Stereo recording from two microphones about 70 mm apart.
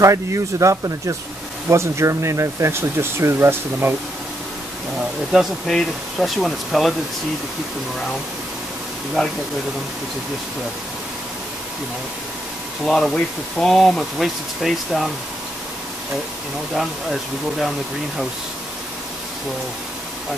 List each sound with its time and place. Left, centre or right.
0.0 s speech: right
5.3 s speech: centre
9.2 s speech: centre
12.8 s speech: centre
16.7 s speech: centre